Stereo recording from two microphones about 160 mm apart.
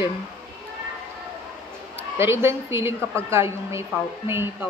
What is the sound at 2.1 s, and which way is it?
A woman's voice, 15° right (ahead or behind).